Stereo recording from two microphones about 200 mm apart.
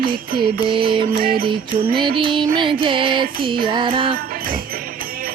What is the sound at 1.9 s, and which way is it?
Music, 25° right (ahead or behind).